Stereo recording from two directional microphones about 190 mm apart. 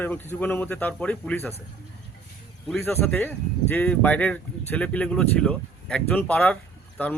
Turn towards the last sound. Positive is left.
turn(degrees=5)  # may be behind; listen again after turning